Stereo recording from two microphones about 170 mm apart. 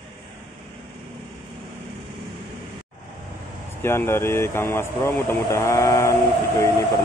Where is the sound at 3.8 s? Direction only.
15° left (ahead or behind).